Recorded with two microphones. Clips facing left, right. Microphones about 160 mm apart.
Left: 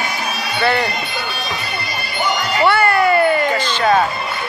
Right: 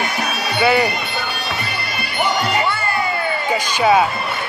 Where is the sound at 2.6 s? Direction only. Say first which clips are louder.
Left 7 dB; 70° left (ahead or behind).